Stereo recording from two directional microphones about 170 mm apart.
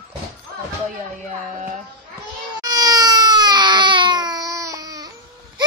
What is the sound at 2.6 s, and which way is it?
Baby cry, 20° right (ahead or behind).